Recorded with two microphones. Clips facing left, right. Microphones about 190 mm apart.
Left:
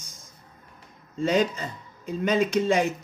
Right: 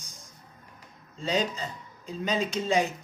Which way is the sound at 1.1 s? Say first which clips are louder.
Left 5 dB; 55° left (ahead or behind).